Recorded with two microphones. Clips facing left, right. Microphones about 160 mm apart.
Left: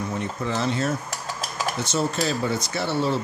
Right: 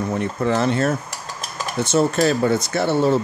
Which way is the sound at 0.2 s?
60° right (ahead or behind).